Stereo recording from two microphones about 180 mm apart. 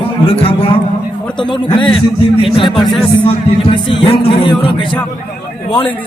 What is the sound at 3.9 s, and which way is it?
Speech, 30° left (ahead or behind).